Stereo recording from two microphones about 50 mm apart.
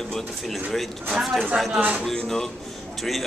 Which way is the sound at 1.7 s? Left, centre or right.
Right.